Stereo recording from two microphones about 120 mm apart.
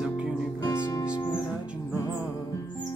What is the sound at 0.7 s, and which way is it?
Music, 30° left (ahead or behind).